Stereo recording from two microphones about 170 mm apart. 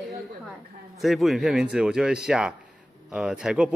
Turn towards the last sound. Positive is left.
turn(degrees=-5)  # may be behind; listen again after turning